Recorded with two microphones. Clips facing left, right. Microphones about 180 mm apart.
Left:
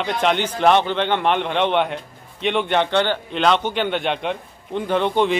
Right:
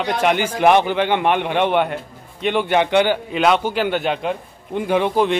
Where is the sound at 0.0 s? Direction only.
5° right (ahead or behind).